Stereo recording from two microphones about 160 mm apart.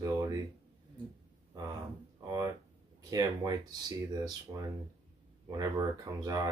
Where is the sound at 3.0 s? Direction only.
25° right (ahead or behind).